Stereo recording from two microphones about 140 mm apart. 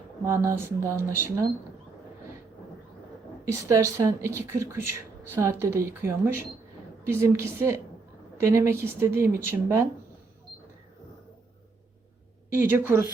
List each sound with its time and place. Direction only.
0.3 s speech: 20° right (ahead or behind)
3.4 s speech: 20° right (ahead or behind)
12.5 s speech: 15° right (ahead or behind)